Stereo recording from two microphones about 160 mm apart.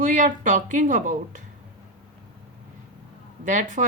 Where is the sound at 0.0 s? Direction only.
55° right (ahead or behind).